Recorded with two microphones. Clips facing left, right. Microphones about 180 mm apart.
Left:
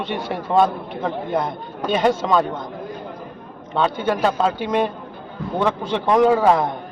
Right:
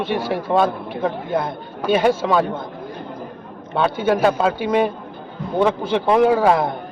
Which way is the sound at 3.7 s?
10° right (ahead or behind).